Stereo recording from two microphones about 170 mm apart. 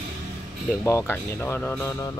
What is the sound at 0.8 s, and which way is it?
Speech, 15° left (ahead or behind).